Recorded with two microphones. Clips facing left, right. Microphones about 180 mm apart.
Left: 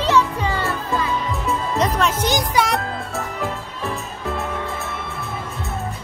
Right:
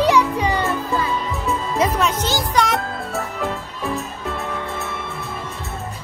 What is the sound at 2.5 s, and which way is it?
Music, centre (ahead or behind).